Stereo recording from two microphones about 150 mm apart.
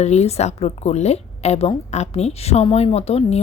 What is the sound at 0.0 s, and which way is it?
A woman's voice, 45° left (ahead or behind).